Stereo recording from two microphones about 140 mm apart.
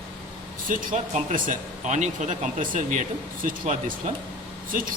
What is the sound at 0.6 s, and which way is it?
Speech, 75° right (ahead or behind).